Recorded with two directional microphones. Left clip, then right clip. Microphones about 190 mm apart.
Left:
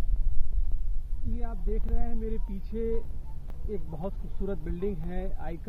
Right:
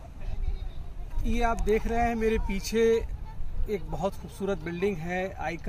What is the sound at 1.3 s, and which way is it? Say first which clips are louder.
Speech: right 14 dB; 25° right (ahead or behind).